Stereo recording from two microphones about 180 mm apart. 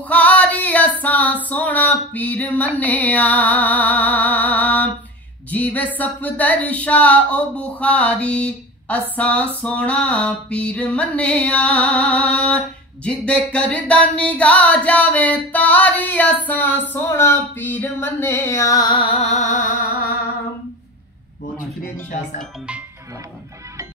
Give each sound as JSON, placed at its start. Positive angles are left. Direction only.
{"t": 0.1, "sound": "music", "side_deg": 10}
{"t": 1.5, "sound": "a sound", "side_deg": 10}
{"t": 5.5, "sound": "music", "side_deg": 10}